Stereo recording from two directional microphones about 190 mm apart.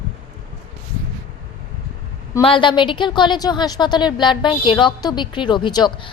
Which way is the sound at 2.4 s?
25° left (ahead or behind).